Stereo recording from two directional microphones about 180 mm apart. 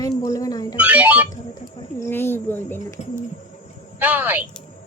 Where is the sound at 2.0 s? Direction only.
10° left (ahead or behind).